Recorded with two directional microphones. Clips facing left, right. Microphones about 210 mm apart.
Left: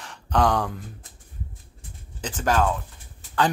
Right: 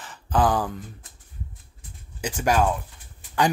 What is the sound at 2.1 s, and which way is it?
Speech, 10° right (ahead or behind).